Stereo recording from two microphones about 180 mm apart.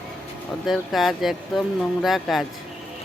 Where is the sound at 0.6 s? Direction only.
Centre (ahead or behind).